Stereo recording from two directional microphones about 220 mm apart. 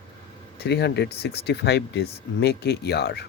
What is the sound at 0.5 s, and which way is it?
Speech, 50° left (ahead or behind).